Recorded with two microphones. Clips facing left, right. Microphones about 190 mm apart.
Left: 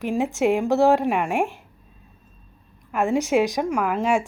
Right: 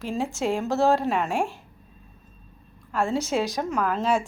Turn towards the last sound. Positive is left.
turn(degrees=15)  # may be behind; listen again after turning